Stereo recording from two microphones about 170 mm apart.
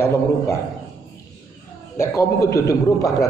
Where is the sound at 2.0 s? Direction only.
15° left (ahead or behind).